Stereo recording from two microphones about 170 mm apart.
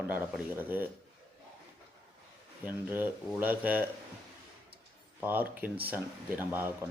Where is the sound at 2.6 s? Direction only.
10° right (ahead or behind).